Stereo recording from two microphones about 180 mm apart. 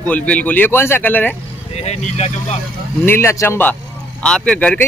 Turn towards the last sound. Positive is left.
turn(degrees=10)  # may be behind; listen again after turning